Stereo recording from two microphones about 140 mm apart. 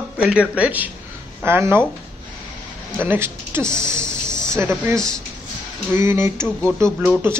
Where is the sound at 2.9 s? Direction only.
15° right (ahead or behind).